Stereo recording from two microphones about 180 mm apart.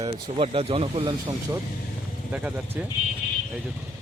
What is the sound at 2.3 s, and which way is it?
Speech, 10° right (ahead or behind).